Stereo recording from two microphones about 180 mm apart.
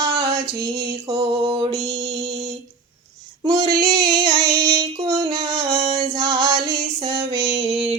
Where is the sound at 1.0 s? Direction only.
20° right (ahead or behind).